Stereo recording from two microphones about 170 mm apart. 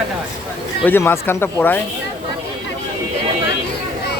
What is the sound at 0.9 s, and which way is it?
Speech, 15° left (ahead or behind).